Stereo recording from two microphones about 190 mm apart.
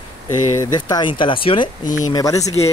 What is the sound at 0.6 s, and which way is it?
Speech, 20° left (ahead or behind).